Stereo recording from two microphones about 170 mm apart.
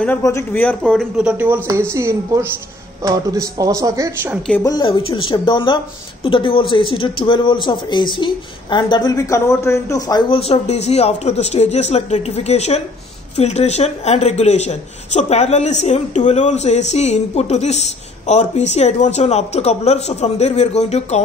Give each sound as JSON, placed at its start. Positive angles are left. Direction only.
{"t": 0.2, "sound": "a man's voice", "side_deg": 15}
{"t": 4.6, "sound": "a man's voice", "side_deg": 25}
{"t": 10.4, "sound": "speech", "side_deg": 40}